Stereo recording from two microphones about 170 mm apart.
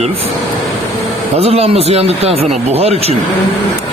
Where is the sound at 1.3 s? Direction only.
35° right (ahead or behind).